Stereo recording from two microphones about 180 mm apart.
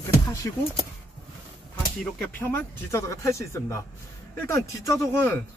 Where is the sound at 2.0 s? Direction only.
10° left (ahead or behind).